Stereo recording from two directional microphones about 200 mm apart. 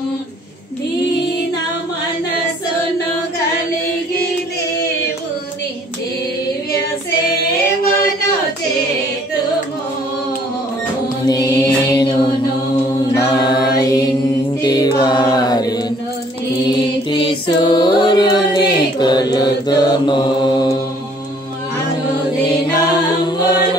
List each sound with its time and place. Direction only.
11.2 s music: 20° left (ahead or behind)
13.1 s chant: 20° left (ahead or behind)
14.6 s music: 20° left (ahead or behind)
17.1 s music: 25° left (ahead or behind)
22.8 s music: 20° left (ahead or behind)